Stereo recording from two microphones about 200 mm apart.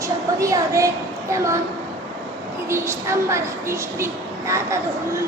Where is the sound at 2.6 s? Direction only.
15° right (ahead or behind).